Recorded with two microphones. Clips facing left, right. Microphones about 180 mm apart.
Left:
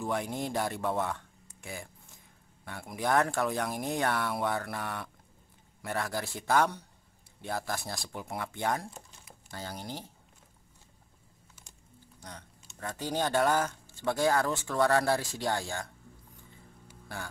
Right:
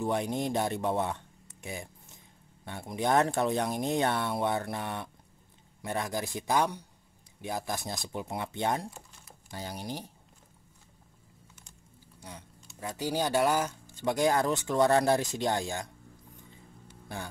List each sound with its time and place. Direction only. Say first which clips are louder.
0.0 s speech: right 3 dB; 20° right (ahead or behind)
12.2 s speech: right 1 dB; 10° right (ahead or behind)